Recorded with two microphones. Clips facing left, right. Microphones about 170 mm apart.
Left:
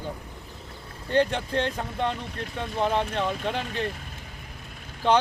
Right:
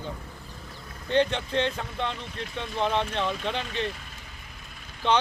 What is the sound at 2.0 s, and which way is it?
Speech, 45° left (ahead or behind).